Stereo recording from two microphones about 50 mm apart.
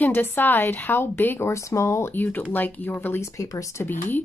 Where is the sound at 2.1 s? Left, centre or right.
Left.